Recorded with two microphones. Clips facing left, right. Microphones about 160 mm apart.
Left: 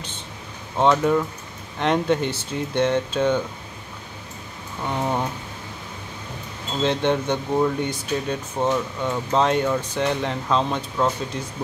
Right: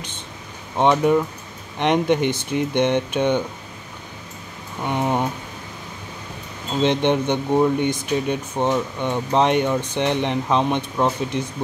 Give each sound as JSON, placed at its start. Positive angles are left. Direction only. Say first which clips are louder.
{"t": 0.7, "sound": "speech", "louder": "right 2 dB", "side_deg": -15}
{"t": 4.8, "sound": "speech", "louder": "right 3 dB", "side_deg": -15}
{"t": 6.8, "sound": "speech", "louder": "right 3 dB", "side_deg": -20}